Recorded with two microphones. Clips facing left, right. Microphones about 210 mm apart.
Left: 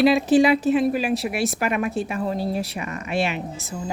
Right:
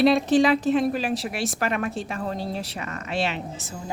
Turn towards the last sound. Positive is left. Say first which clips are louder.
# left 4 dB
turn(degrees=10)  # may be behind; listen again after turning